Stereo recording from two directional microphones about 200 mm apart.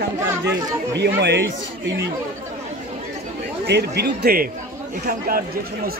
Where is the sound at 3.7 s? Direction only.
55° right (ahead or behind).